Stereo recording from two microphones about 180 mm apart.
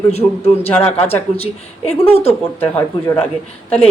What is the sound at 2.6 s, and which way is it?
Speech, 10° left (ahead or behind).